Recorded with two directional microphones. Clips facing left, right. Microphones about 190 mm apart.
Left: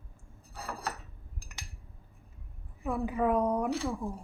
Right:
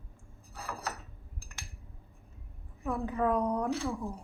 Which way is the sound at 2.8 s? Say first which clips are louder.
Left 1 dB; 10° left (ahead or behind).